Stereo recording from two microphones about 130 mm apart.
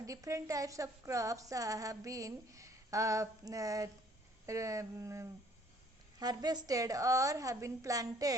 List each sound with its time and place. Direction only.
0.0 s speech: 25° right (ahead or behind)